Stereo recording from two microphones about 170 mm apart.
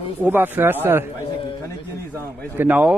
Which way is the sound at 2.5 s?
10° right (ahead or behind).